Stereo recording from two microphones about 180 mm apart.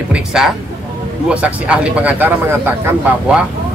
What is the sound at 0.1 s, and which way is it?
Music, 5° right (ahead or behind).